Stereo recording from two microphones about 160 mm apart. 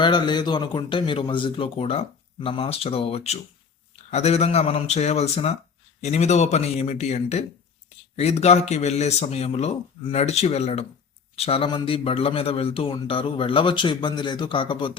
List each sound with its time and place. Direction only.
0.0 s a man's voice: 30° left (ahead or behind)